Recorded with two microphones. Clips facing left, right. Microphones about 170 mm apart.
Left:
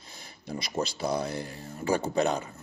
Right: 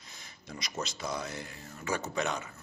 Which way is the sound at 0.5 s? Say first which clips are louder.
Left 7 dB; 30° left (ahead or behind).